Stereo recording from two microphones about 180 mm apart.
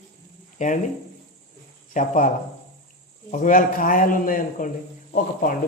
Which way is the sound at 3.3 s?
45° left (ahead or behind).